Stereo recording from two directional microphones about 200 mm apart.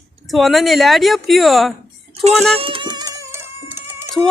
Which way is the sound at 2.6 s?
25° right (ahead or behind).